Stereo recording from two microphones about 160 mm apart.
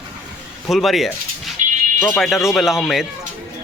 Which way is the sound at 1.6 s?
55° right (ahead or behind).